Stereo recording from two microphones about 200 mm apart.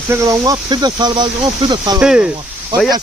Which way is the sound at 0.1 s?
15° right (ahead or behind).